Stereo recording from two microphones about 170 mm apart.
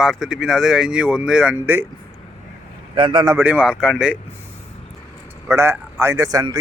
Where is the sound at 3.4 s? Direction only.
10° right (ahead or behind).